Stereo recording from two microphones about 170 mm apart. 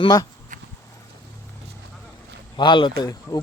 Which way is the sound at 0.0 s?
25° left (ahead or behind).